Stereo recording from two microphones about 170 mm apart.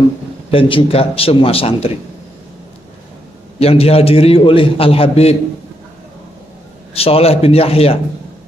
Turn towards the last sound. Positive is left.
turn(degrees=35)  # may be behind; listen again after turning